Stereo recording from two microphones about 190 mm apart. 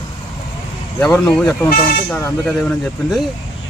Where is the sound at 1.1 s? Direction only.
5° left (ahead or behind).